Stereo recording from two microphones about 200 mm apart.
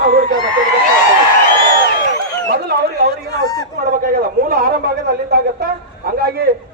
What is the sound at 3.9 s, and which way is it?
A man's voice, 50° right (ahead or behind).